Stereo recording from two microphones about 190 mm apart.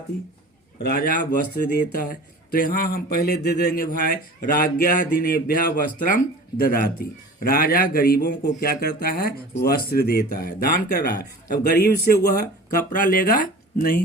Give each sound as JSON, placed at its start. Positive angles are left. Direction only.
{"t": 0.8, "sound": "speech", "side_deg": 55}